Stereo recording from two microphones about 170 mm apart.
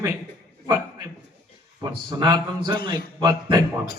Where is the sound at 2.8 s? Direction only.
60° left (ahead or behind).